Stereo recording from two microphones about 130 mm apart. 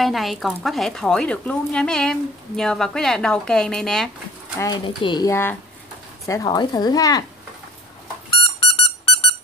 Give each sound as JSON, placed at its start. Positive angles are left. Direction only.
{"t": 0.0, "sound": "speech", "side_deg": 0}
{"t": 4.8, "sound": "speech", "side_deg": 35}
{"t": 5.3, "sound": "speech", "side_deg": 15}
{"t": 8.3, "sound": "a sound", "side_deg": 45}